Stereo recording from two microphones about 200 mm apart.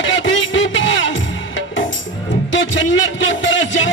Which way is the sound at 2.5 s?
70° left (ahead or behind).